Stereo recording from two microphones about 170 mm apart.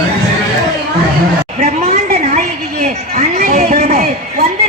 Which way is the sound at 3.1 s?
45° right (ahead or behind).